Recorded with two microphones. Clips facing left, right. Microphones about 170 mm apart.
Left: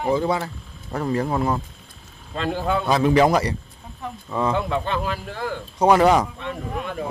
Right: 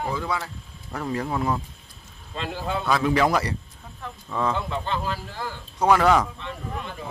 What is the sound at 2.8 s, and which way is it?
Speech, 25° left (ahead or behind).